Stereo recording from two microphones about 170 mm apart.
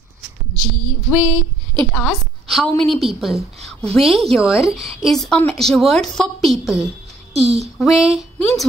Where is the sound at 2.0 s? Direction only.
Centre (ahead or behind).